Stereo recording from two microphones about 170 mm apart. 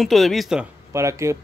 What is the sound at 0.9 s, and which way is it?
Speech, 15° right (ahead or behind).